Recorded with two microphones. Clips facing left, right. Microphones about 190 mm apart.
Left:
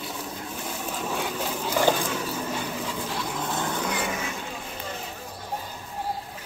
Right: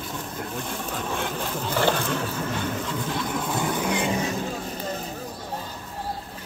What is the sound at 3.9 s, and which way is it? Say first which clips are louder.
Vehicle: right 5 dB; 30° right (ahead or behind).